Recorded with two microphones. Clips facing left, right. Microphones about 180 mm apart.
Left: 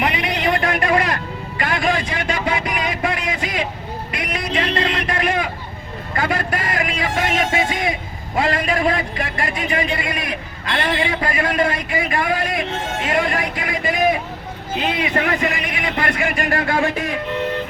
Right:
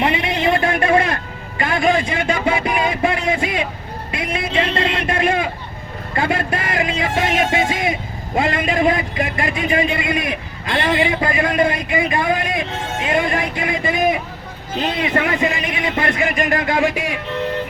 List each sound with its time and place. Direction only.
0.0 s music: 25° right (ahead or behind)
4.1 s a man's voice: 25° right (ahead or behind)
15.4 s a man's voice: 25° right (ahead or behind)